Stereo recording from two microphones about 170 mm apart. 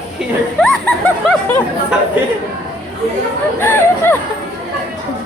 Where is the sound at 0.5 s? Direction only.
5° left (ahead or behind).